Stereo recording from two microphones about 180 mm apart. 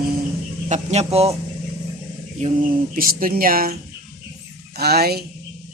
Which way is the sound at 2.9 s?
50° right (ahead or behind).